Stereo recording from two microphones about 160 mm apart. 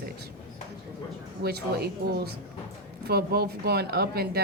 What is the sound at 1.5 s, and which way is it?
Speech, 85° right.